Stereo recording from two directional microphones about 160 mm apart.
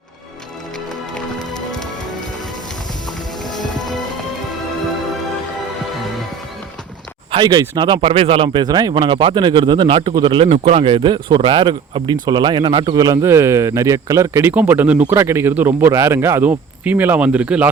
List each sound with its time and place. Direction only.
3.4 s music: 25° left (ahead or behind)
7.3 s speech: 30° right (ahead or behind); by 17.7 s 10° right (ahead or behind)